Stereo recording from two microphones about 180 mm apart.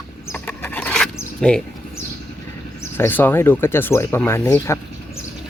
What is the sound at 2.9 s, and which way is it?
Speech, 10° left (ahead or behind).